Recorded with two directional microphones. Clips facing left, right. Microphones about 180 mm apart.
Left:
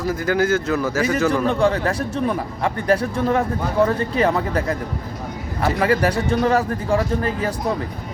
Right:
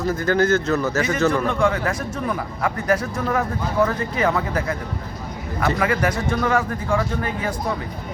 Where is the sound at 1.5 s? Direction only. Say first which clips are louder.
Left 2 dB; 35° left (ahead or behind).